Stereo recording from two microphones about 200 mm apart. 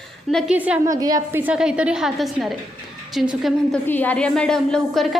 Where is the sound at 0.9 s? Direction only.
20° right (ahead or behind).